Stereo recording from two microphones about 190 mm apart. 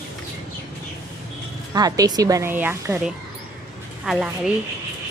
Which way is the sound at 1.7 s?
20° right (ahead or behind).